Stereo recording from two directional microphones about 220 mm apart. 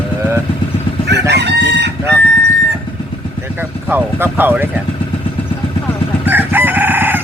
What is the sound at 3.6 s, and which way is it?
Speech, 10° right (ahead or behind).